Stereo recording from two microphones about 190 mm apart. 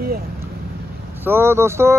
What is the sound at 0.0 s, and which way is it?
Vehicle, 55° right (ahead or behind).